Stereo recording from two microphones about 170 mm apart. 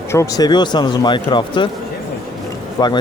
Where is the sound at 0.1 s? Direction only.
20° left (ahead or behind).